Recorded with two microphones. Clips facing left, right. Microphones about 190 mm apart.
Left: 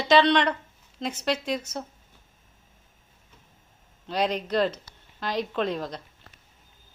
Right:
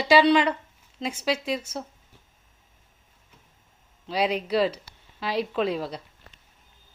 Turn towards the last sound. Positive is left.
turn(degrees=-5)  # may be behind; listen again after turning